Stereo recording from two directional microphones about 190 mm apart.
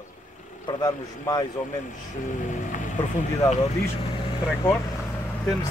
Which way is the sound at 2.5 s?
45° left (ahead or behind).